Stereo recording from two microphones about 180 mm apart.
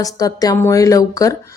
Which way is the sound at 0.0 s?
20° left (ahead or behind).